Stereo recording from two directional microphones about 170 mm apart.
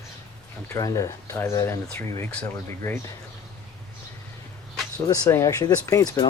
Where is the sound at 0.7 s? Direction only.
20° left (ahead or behind).